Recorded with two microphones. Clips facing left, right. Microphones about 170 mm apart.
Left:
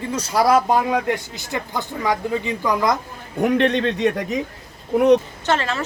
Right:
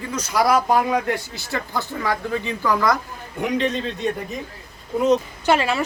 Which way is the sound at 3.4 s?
55° left (ahead or behind).